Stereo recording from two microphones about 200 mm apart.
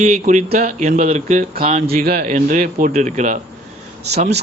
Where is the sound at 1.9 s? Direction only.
50° right (ahead or behind).